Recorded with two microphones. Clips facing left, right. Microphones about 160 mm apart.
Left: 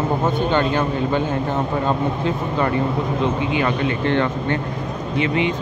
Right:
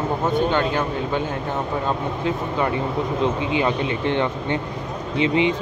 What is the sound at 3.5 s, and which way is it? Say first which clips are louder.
Speech: left 1 dB; 20° right (ahead or behind).